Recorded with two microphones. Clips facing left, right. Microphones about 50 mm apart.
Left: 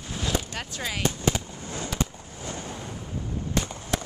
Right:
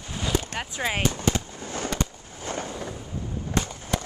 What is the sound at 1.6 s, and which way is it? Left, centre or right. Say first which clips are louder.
Fireworks: right 3 dB; right.